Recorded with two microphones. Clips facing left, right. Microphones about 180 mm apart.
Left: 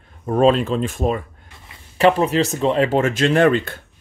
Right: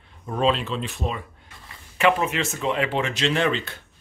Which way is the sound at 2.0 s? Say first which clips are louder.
Left 6 dB; 35° left (ahead or behind).